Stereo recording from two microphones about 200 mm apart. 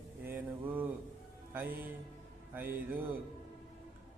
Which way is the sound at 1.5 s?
10° right (ahead or behind).